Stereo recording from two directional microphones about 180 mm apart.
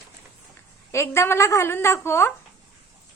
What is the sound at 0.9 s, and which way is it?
A woman's voice, 15° left (ahead or behind).